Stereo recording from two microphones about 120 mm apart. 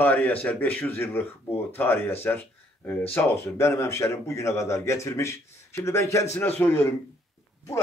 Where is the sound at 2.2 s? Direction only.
15° left (ahead or behind).